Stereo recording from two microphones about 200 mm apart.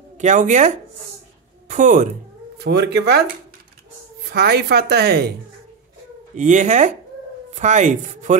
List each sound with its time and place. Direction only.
0.2 s speech: 35° right (ahead or behind)
2.6 s speech: 55° right (ahead or behind)
4.2 s a woman's voice: 55° right (ahead or behind)
6.3 s speech: 40° right (ahead or behind)